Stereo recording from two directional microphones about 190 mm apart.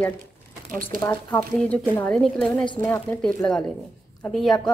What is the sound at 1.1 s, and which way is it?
A woman's voice, 10° left (ahead or behind).